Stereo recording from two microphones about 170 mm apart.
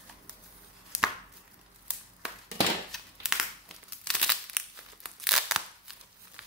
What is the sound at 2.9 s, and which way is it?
Crumpling, centre (ahead or behind).